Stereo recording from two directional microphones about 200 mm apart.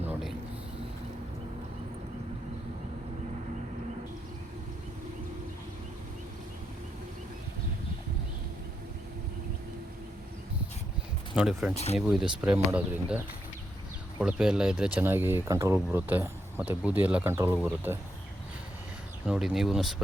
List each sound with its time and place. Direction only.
0.0 s a sound: centre (ahead or behind)
11.3 s speech: 5° right (ahead or behind)
11.7 s speech: 30° left (ahead or behind)
11.9 s speech: centre (ahead or behind)
19.2 s speech: 5° right (ahead or behind)